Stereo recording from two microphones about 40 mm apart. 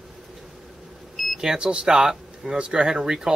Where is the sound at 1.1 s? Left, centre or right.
Centre.